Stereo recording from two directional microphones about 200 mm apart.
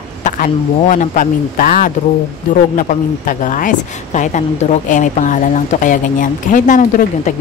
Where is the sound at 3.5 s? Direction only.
40° left (ahead or behind).